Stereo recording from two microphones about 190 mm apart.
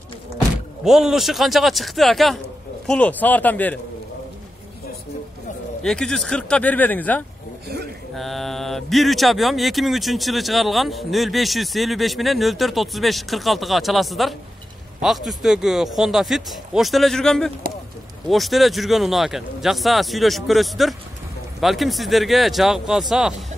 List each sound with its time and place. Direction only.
0.8 s speech: centre (ahead or behind)
5.8 s speech: 5° left (ahead or behind)
7.6 s a sound: 60° right (ahead or behind)
8.1 s speech: centre (ahead or behind)